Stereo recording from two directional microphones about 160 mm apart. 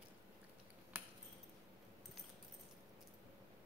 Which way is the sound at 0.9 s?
10° right (ahead or behind).